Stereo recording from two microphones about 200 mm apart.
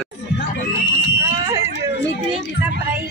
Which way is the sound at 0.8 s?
65° left (ahead or behind).